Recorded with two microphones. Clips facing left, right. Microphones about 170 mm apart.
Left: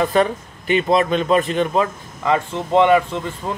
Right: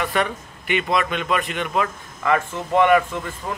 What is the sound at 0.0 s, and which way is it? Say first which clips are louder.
Speech: left 6 dB; 35° left (ahead or behind).